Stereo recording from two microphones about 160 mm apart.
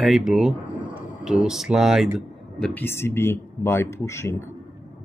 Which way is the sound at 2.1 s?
10° left (ahead or behind).